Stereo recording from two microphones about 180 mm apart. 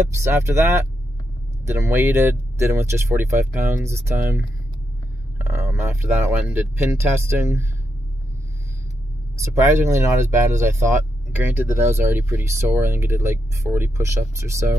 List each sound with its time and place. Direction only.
0.1 s speech: 15° right (ahead or behind)
9.4 s speech: 15° right (ahead or behind)